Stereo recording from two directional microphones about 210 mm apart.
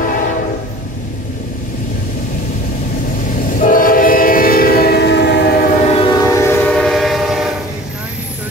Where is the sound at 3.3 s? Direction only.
40° left (ahead or behind).